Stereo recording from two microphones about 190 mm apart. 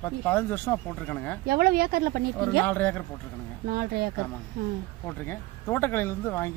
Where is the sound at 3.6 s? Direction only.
55° right (ahead or behind).